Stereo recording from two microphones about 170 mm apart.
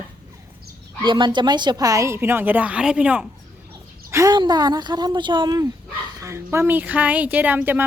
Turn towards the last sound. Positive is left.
turn(degrees=-10)  # may be behind; listen again after turning